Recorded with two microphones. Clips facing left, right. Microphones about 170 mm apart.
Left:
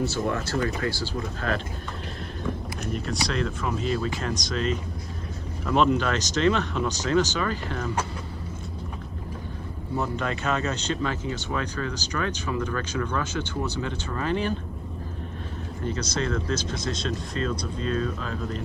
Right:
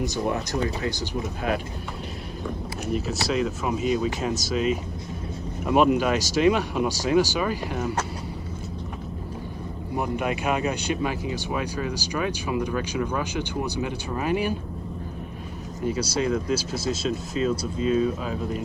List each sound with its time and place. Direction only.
0.0 s speech: 15° right (ahead or behind)
2.9 s speech: 5° right (ahead or behind)
9.9 s speech: 15° right (ahead or behind)
15.8 s speech: 10° right (ahead or behind)